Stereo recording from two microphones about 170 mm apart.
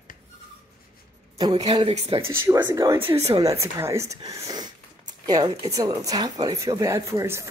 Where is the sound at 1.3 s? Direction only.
25° right (ahead or behind).